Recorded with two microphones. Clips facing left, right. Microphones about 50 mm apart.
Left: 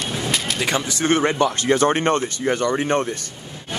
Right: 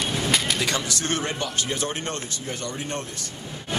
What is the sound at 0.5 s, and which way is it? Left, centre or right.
Speech, left.